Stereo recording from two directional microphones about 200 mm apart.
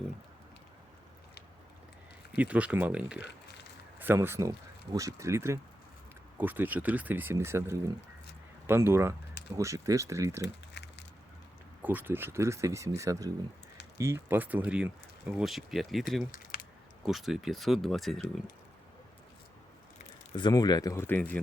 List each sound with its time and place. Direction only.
2.3 s speech: 5° right (ahead or behind)
10.4 s crumpling: 60° left (ahead or behind)
11.8 s speech: 10° right (ahead or behind)
16.3 s typing: 45° left (ahead or behind)
17.1 s speech: centre (ahead or behind)
20.3 s speech: 20° left (ahead or behind)